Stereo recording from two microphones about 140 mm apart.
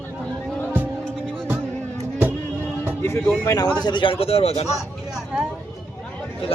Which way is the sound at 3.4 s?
25° left (ahead or behind).